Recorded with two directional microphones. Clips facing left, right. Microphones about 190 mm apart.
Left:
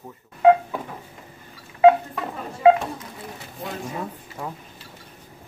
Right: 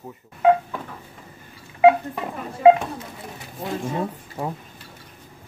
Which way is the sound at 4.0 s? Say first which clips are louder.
Right 5 dB; 25° right (ahead or behind).